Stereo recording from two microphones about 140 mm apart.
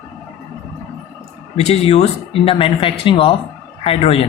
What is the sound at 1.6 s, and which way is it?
A man's voice, 45° left (ahead or behind).